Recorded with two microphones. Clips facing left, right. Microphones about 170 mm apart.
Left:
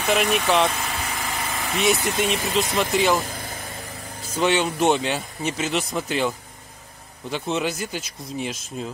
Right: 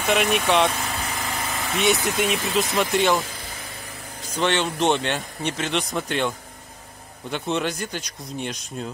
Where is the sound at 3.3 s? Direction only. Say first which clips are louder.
Left 4 dB; 50° left (ahead or behind).